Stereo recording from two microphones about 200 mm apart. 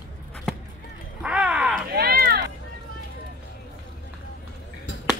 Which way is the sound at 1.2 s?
5° right (ahead or behind).